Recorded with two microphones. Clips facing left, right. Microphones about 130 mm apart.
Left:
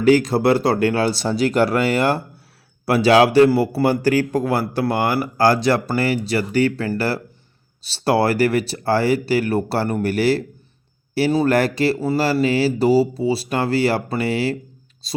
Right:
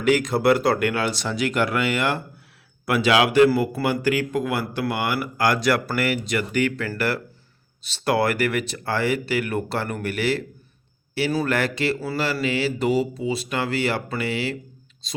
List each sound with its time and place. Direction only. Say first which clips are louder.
0.0 s a man's voice: left 4 dB; 35° left (ahead or behind)
11.4 s a man's voice: left 6 dB; 40° left (ahead or behind)